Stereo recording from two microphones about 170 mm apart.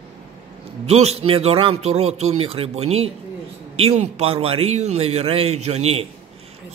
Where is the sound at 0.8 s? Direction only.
40° right (ahead or behind).